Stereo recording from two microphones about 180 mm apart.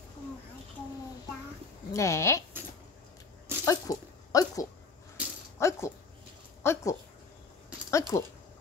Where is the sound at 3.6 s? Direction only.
20° left (ahead or behind).